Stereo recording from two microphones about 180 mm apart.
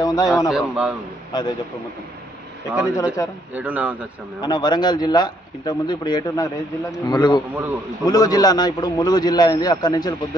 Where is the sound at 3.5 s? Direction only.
10° right (ahead or behind).